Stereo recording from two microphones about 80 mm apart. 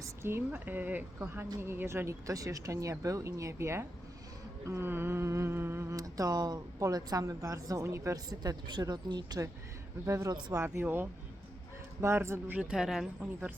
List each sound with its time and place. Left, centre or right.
0.0 s a woman's voice: right
8.3 s a woman's voice: right
10.6 s a woman's voice: right
12.7 s speech: centre